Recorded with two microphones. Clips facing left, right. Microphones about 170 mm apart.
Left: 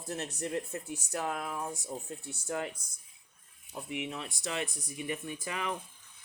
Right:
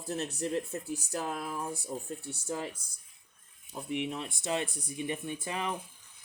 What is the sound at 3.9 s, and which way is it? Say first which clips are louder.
Speech: right 4 dB; 30° right (ahead or behind).